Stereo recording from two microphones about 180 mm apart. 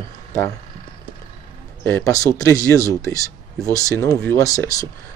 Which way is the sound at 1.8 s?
15° left (ahead or behind).